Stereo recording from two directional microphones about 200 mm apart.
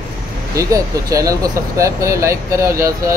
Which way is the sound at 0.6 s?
15° right (ahead or behind).